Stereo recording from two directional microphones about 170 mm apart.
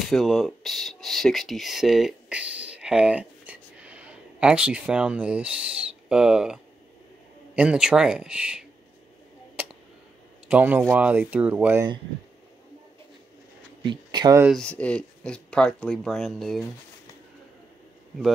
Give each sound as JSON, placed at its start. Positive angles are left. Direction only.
{"t": 0.0, "sound": "speech", "side_deg": 0}
{"t": 9.6, "sound": "a sound", "side_deg": -10}
{"t": 10.5, "sound": "speech", "side_deg": -10}
{"t": 13.8, "sound": "speech", "side_deg": -25}
{"t": 14.6, "sound": "speech", "side_deg": 5}